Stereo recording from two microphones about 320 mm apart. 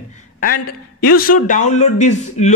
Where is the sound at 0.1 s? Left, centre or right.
Left.